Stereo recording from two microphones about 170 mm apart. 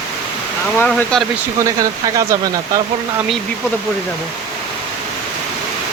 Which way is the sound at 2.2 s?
20° right (ahead or behind).